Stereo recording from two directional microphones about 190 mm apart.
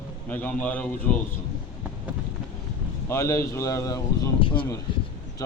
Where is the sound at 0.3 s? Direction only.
10° left (ahead or behind).